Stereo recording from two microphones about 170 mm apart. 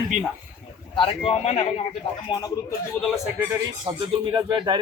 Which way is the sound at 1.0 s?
35° left (ahead or behind).